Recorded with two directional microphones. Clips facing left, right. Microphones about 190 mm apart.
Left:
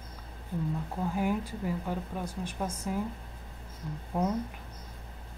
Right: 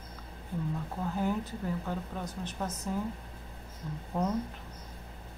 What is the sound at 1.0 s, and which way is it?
A woman's voice, 10° left (ahead or behind).